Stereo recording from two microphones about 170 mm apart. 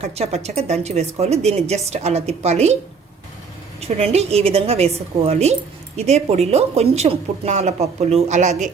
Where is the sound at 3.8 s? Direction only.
35° right (ahead or behind).